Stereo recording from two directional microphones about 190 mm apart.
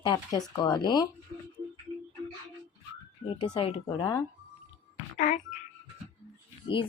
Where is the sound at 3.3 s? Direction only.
25° left (ahead or behind).